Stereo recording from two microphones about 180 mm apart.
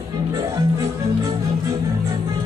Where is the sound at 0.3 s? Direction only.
20° right (ahead or behind).